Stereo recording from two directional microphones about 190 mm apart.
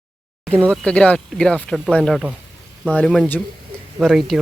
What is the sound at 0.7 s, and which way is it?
Speech, 5° left (ahead or behind).